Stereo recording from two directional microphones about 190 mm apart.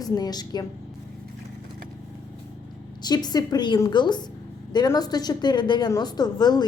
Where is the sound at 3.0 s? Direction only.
20° left (ahead or behind).